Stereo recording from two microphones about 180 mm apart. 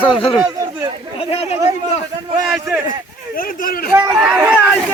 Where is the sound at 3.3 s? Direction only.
50° left (ahead or behind).